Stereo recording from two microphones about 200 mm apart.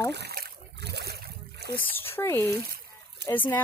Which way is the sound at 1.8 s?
10° left (ahead or behind).